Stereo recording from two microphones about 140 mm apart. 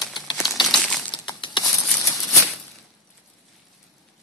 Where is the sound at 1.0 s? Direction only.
35° left (ahead or behind).